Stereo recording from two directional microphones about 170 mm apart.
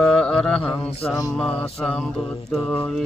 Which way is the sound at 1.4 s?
10° left (ahead or behind).